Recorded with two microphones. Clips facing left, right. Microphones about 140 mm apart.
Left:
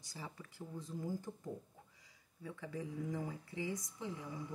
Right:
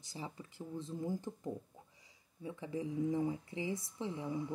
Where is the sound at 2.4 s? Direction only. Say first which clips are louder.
Right 4 dB; 20° right (ahead or behind).